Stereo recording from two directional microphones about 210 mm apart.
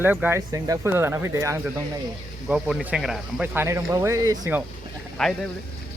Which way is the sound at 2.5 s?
5° right (ahead or behind).